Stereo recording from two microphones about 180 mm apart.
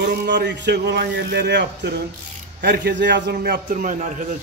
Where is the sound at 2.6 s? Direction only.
65° right (ahead or behind); by 4.3 s 45° right (ahead or behind).